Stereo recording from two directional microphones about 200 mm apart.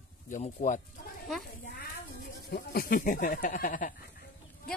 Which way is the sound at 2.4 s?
50° left (ahead or behind).